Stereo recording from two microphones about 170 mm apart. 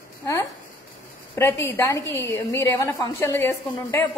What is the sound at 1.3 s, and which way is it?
Speech, 15° left (ahead or behind).